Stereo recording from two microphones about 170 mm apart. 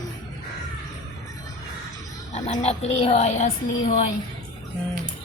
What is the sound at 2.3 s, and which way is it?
A woman's voice, 40° left (ahead or behind).